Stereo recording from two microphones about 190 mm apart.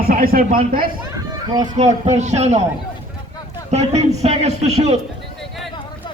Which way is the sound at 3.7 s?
35° right (ahead or behind).